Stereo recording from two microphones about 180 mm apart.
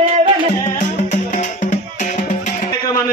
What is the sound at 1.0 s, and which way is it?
Music, 45° left (ahead or behind).